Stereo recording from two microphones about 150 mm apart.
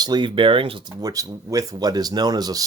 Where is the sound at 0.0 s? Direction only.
30° right (ahead or behind).